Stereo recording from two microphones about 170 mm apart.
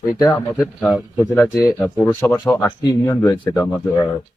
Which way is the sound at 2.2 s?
15° left (ahead or behind).